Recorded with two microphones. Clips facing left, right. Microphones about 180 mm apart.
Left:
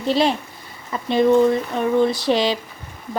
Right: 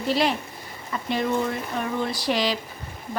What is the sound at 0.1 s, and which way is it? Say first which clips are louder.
Speech: left 4 dB; 25° left (ahead or behind).